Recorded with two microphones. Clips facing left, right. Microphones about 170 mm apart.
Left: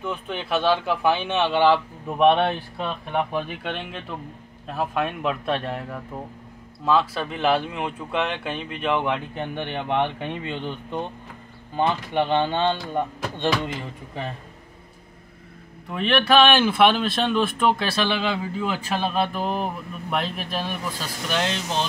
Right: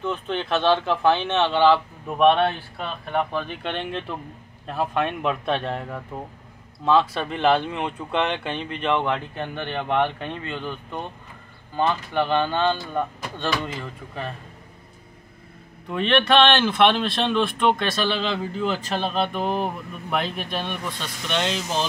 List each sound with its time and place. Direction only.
0.0 s speech: 10° left (ahead or behind)
15.9 s speech: 5° left (ahead or behind)